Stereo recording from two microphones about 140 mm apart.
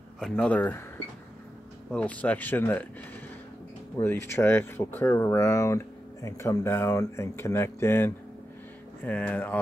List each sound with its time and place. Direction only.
0.2 s speech: 10° left (ahead or behind)
1.9 s speech: 10° left (ahead or behind)
4.0 s speech: 15° left (ahead or behind)